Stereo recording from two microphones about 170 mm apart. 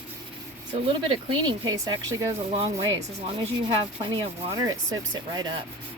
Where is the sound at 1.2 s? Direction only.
25° right (ahead or behind).